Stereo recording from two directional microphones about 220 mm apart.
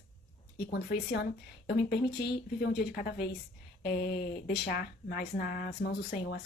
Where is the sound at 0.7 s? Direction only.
50° left (ahead or behind).